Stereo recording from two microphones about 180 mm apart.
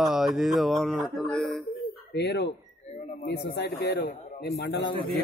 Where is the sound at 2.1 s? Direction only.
65° left (ahead or behind).